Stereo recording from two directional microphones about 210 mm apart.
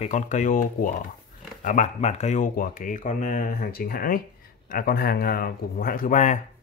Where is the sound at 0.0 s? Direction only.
35° left (ahead or behind).